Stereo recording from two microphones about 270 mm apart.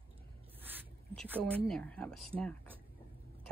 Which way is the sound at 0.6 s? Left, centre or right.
Centre.